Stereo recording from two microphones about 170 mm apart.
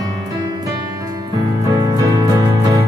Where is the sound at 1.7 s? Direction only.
20° right (ahead or behind).